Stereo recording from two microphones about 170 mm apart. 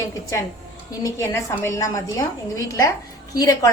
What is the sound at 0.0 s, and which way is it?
A woman's voice, 20° left (ahead or behind).